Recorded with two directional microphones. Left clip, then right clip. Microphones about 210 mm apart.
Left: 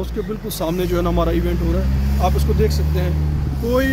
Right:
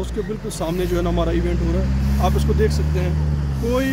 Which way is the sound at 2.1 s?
10° left (ahead or behind).